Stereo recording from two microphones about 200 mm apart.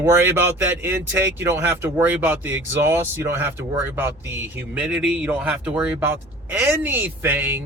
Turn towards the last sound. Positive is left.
turn(degrees=-10)  # may be behind; listen again after turning